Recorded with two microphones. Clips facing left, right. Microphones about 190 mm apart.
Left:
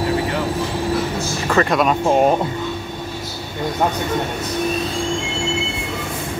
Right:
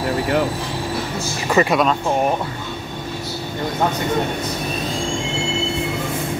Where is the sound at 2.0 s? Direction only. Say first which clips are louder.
Left 4 dB; 20° left (ahead or behind).